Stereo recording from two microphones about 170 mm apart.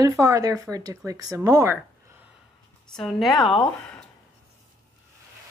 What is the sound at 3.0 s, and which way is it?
Speech, centre (ahead or behind).